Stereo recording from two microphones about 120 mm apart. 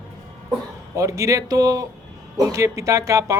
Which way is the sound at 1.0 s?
25° right (ahead or behind).